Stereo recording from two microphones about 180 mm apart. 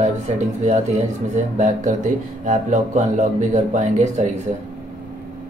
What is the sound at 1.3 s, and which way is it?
Speech, 40° right (ahead or behind).